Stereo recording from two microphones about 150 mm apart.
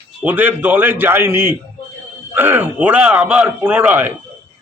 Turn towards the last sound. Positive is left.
turn(degrees=-10)  # may be behind; listen again after turning